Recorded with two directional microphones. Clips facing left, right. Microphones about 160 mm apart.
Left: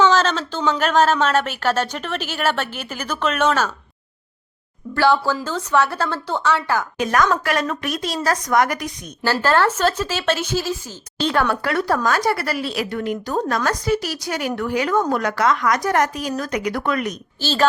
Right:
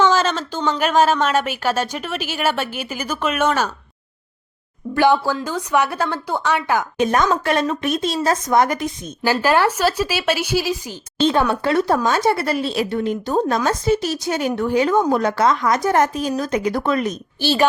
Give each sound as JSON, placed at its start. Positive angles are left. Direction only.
{"t": 0.0, "sound": "a sound", "side_deg": -10}
{"t": 0.8, "sound": "speech", "side_deg": -10}
{"t": 4.9, "sound": "a woman's voice", "side_deg": -15}
{"t": 9.2, "sound": "speech", "side_deg": -15}
{"t": 11.2, "sound": "a woman's voice", "side_deg": -20}
{"t": 17.4, "sound": "speech", "side_deg": -15}